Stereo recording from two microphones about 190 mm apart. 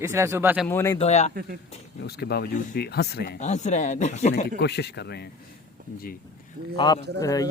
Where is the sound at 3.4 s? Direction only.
35° left (ahead or behind).